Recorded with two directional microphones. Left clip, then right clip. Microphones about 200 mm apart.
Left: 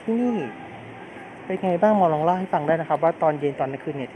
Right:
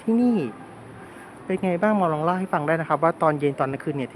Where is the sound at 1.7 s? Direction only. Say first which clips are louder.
Left 4 dB; 20° right (ahead or behind).